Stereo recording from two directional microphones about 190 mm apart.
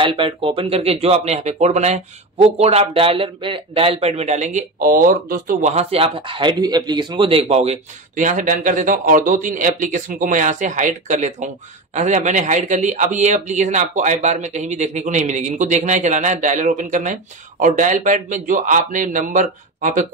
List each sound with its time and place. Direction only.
0.0 s speech: 25° right (ahead or behind)